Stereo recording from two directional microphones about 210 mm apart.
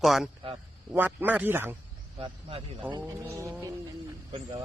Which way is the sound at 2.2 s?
25° right (ahead or behind).